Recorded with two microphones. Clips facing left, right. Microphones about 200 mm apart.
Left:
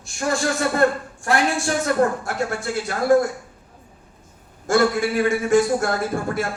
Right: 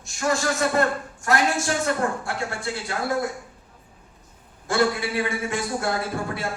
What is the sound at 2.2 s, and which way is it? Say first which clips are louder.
Speech: left 4 dB; 45° left (ahead or behind).